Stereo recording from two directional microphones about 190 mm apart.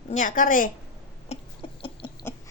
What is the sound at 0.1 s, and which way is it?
Speech, 40° left (ahead or behind).